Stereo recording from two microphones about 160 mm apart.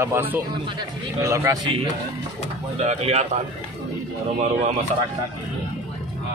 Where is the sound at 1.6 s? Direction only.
35° right (ahead or behind).